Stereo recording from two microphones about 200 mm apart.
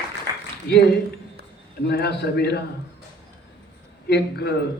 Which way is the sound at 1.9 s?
55° left (ahead or behind).